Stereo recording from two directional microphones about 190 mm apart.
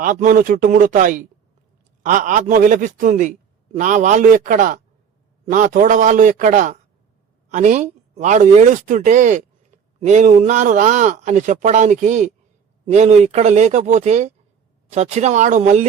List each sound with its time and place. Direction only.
0.0 s a man's voice: 45° right (ahead or behind)